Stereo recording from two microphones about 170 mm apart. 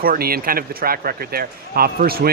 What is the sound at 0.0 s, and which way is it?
Speech, 60° right (ahead or behind).